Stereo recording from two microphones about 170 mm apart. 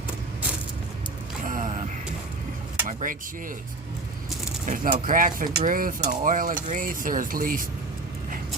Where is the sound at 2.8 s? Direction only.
50° right (ahead or behind).